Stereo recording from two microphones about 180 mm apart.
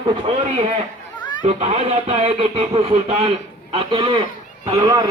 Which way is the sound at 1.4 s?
35° right (ahead or behind).